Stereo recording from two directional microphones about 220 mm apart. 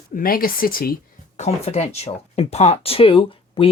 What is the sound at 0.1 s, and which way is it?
Speech, 40° left (ahead or behind).